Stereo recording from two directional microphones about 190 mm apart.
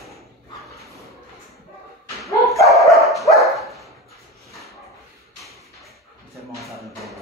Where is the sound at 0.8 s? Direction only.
15° right (ahead or behind).